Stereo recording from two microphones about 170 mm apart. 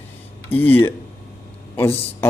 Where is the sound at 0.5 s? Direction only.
10° left (ahead or behind).